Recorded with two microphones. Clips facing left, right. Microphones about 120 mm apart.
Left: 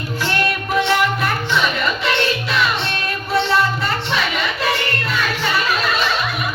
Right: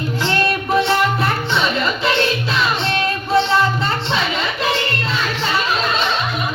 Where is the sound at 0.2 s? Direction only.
25° right (ahead or behind).